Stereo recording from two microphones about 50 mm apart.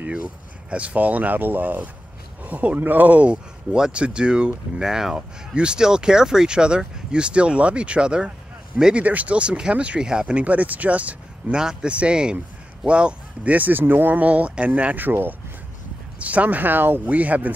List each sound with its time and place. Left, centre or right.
0.7 s speech: right
3.7 s speech: centre
9.0 s speech: right
10.4 s speech: right
11.5 s speech: centre; by 15.3 s right
16.2 s speech: right
17.1 s speech: right